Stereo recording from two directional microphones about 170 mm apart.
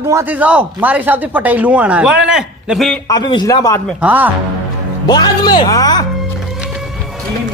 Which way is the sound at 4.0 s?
10° right (ahead or behind).